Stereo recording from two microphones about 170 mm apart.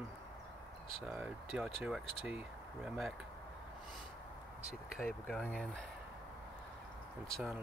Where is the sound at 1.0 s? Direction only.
Centre (ahead or behind).